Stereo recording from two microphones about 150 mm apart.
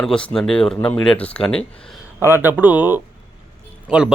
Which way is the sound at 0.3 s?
5° left (ahead or behind).